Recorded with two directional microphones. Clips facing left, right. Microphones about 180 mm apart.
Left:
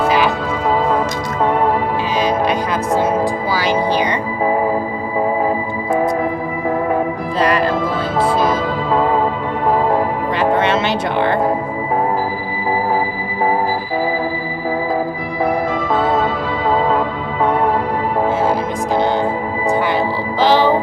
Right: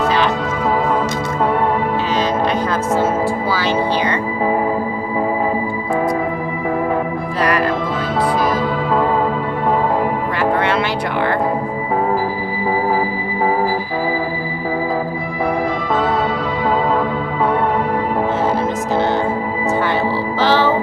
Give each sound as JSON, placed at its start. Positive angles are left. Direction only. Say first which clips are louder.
{"t": 2.1, "sound": "music", "louder": "left 2 dB", "side_deg": 10}
{"t": 7.3, "sound": "music", "louder": "left 2 dB", "side_deg": 25}
{"t": 10.3, "sound": "music", "louder": "left 3 dB", "side_deg": 20}
{"t": 18.9, "sound": "music", "louder": "left 1 dB", "side_deg": 15}
{"t": 20.4, "sound": "music", "louder": "left 2 dB", "side_deg": 15}